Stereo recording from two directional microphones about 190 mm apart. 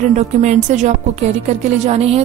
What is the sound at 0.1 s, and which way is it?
Speech, 35° right (ahead or behind).